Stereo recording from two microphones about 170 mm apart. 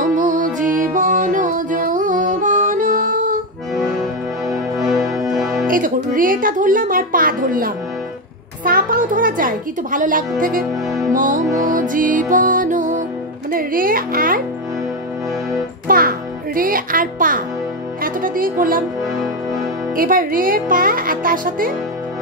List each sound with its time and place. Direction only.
0.0 s music: 50° right (ahead or behind)
3.7 s accordion: centre (ahead or behind)
5.0 s music: 20° right (ahead or behind)
5.3 s music: centre (ahead or behind)
5.7 s speech: 55° right (ahead or behind)
10.7 s music: centre (ahead or behind)
11.1 s music: 50° right (ahead or behind)
13.5 s speech: 55° right (ahead or behind)
15.9 s music: 60° right (ahead or behind)
20.0 s speech: 55° right (ahead or behind)